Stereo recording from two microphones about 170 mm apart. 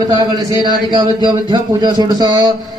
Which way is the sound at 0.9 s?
25° right (ahead or behind).